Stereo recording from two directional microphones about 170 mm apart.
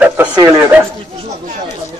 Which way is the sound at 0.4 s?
15° right (ahead or behind).